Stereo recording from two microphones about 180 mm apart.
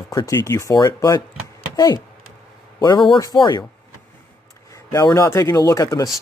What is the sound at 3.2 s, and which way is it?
Speech, 20° left (ahead or behind).